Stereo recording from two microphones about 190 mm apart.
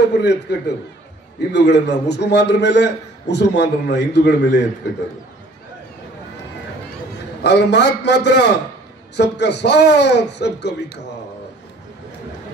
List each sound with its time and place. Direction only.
0.2 s a man's voice: 60° left (ahead or behind)
7.4 s a man's voice: 65° left (ahead or behind)